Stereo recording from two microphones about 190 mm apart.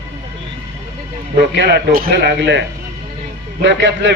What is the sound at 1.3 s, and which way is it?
Speech, 65° right (ahead or behind).